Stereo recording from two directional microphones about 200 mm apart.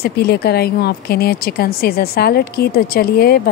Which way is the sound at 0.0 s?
50° left (ahead or behind).